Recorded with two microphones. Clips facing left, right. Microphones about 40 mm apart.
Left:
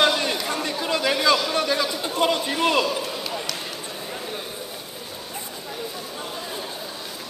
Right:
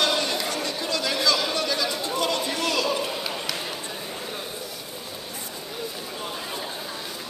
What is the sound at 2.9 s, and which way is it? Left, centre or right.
Basketball bounce, centre.